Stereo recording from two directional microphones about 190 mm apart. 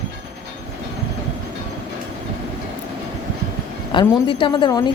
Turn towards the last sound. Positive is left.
turn(degrees=20)  # may be behind; listen again after turning